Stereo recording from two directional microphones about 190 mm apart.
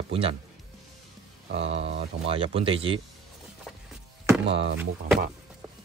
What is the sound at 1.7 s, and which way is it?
Speech, 75° right (ahead or behind).